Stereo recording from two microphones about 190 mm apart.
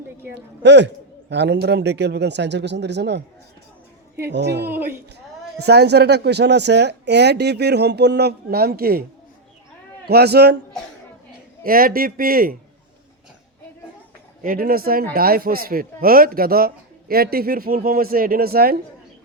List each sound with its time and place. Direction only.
0.3 s speech: 65° right (ahead or behind)
4.3 s speech: 65° right (ahead or behind)
4.6 s a man's voice: 10° right (ahead or behind)
5.5 s speech: 60° right (ahead or behind)
10.1 s speech: 60° right (ahead or behind)
11.6 s a man's voice: 50° right (ahead or behind)
14.4 s a man's voice: 50° right (ahead or behind)